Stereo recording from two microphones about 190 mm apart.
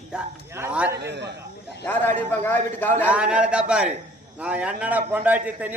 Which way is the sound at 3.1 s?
5° right (ahead or behind).